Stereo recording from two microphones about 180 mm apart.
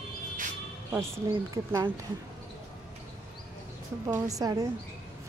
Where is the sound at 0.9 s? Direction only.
15° right (ahead or behind).